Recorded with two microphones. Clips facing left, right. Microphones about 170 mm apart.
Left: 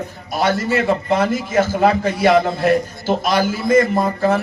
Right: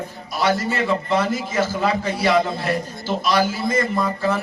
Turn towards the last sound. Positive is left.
turn(degrees=50)  # may be behind; listen again after turning